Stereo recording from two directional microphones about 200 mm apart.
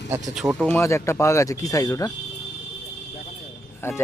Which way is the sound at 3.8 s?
10° left (ahead or behind).